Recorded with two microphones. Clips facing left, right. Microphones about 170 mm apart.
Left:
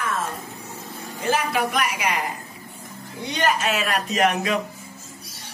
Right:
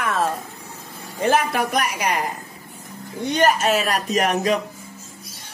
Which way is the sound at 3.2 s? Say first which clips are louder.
Right 5 dB; 45° right (ahead or behind).